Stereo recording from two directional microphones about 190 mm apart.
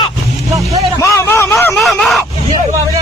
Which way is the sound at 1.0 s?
15° left (ahead or behind).